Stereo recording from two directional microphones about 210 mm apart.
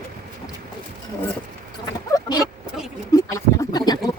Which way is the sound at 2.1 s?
20° left (ahead or behind).